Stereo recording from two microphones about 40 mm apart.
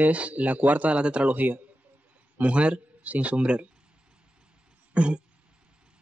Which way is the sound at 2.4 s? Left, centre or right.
Right.